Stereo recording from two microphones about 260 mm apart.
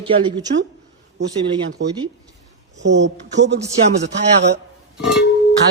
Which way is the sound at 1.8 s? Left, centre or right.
Right.